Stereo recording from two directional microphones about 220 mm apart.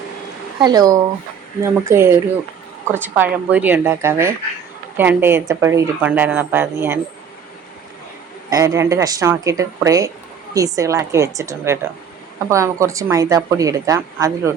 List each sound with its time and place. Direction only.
0.6 s a woman's voice: 15° right (ahead or behind)
8.4 s a woman's voice: 15° right (ahead or behind)